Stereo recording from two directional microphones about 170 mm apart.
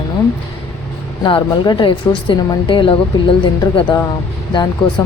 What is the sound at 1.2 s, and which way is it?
A woman's voice, 25° left (ahead or behind).